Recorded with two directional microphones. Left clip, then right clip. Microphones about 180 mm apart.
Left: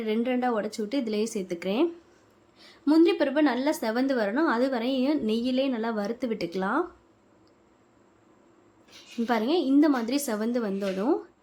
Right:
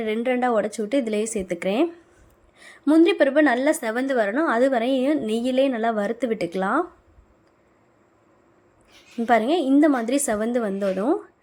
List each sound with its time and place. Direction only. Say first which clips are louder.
0.0 s a woman's voice: right 5 dB; 25° right (ahead or behind)
9.2 s a woman's voice: right 6 dB; 25° right (ahead or behind)